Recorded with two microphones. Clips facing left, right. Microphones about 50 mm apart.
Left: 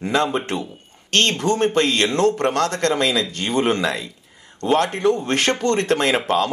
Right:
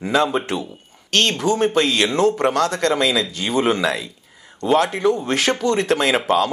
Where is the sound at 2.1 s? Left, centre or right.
Centre.